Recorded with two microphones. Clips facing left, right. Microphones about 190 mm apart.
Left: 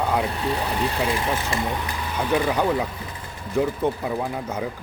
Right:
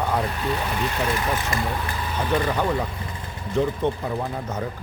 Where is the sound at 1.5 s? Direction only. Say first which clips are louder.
Left 1 dB; 30° left (ahead or behind).